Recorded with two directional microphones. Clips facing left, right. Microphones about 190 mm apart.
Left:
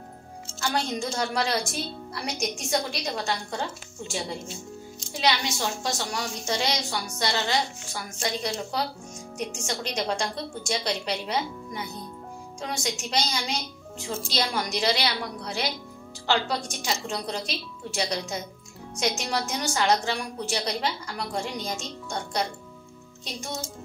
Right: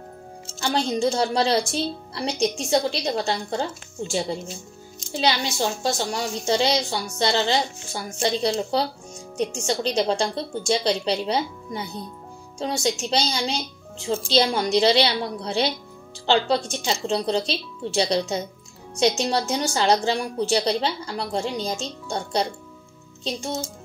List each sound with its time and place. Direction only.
0.6 s a woman's voice: 30° right (ahead or behind)
5.1 s a woman's voice: 30° right (ahead or behind)